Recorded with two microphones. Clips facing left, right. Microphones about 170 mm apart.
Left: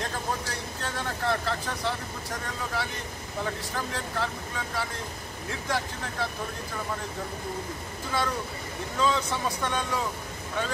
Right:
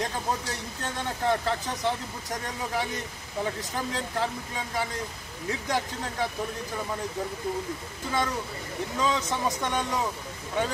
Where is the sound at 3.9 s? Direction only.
20° right (ahead or behind).